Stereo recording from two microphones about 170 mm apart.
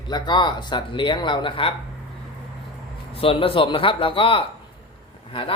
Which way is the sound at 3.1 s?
35° left (ahead or behind).